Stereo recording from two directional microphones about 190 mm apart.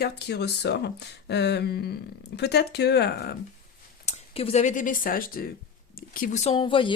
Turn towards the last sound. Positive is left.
turn(degrees=25)  # may be behind; listen again after turning